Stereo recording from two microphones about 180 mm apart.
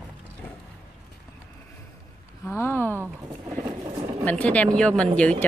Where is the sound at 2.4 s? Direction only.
15° left (ahead or behind).